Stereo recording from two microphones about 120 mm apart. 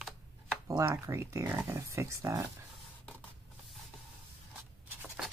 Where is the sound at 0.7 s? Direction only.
25° right (ahead or behind).